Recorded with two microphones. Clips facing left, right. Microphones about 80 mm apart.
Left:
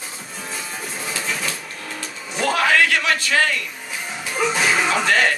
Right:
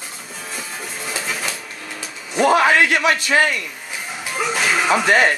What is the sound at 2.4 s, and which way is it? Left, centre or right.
A man's voice, right.